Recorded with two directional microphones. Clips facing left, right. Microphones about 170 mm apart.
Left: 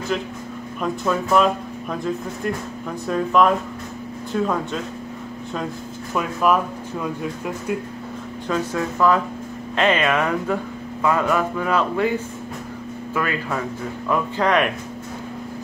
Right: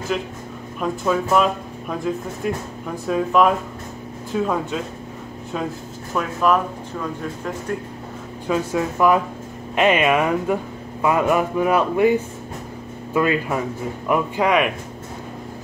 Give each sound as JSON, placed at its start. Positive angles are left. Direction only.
{"t": 0.7, "sound": "speech", "side_deg": -5}
{"t": 3.1, "sound": "speech", "side_deg": -5}
{"t": 6.5, "sound": "speech", "side_deg": 5}
{"t": 8.5, "sound": "speech", "side_deg": -15}